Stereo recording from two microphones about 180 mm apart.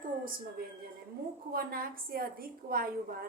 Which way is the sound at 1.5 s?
55° right (ahead or behind).